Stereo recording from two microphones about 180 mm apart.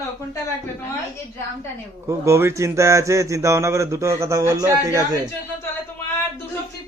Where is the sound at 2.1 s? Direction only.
15° right (ahead or behind).